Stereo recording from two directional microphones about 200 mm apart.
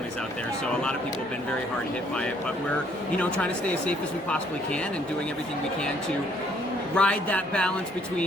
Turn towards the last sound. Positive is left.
turn(degrees=5)  # may be behind; listen again after turning